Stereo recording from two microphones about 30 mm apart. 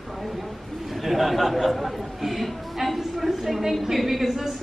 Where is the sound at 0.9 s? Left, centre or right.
Centre.